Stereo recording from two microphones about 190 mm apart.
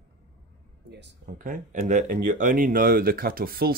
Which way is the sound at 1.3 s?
45° right (ahead or behind).